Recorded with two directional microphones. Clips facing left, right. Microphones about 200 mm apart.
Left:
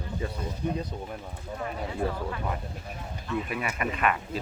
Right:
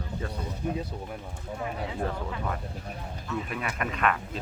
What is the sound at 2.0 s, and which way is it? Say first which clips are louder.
Speech: left 3 dB; 10° left (ahead or behind).